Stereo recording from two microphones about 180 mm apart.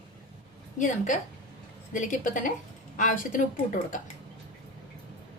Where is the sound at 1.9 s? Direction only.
45° left (ahead or behind).